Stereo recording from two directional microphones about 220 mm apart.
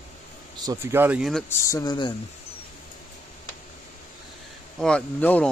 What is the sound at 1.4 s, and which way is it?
Speech, 15° left (ahead or behind).